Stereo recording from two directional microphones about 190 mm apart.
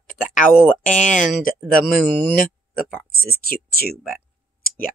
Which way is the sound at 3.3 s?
55° left (ahead or behind).